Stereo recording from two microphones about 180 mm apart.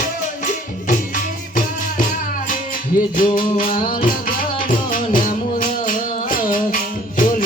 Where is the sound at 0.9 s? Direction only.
45° left (ahead or behind).